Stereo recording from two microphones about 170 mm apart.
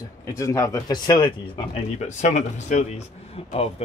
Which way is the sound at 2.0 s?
40° left (ahead or behind).